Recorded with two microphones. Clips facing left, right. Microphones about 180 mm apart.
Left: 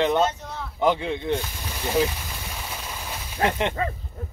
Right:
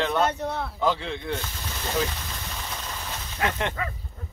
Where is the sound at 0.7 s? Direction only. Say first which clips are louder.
Left 7 dB; 20° left (ahead or behind).